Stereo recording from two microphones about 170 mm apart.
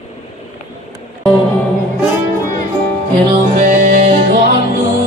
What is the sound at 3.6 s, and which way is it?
Music, 50° right (ahead or behind).